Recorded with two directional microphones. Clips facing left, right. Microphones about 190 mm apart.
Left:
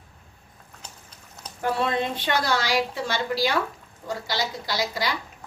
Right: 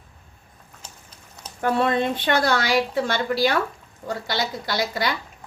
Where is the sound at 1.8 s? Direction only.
55° right (ahead or behind).